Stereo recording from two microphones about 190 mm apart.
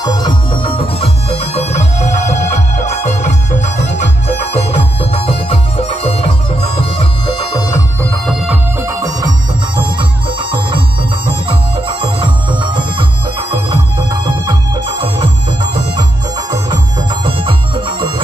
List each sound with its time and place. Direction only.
0.0 s music: 20° left (ahead or behind)
6.8 s bagpipes: 25° left (ahead or behind)
8.0 s music: centre (ahead or behind)
8.8 s music: 20° right (ahead or behind)
11.4 s music: 25° right (ahead or behind)
14.4 s music: 25° right (ahead or behind)